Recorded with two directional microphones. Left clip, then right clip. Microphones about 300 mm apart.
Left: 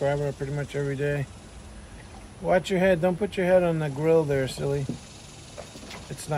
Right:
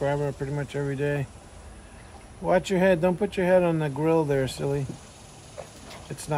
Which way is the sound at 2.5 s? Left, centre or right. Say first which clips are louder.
Even; centre.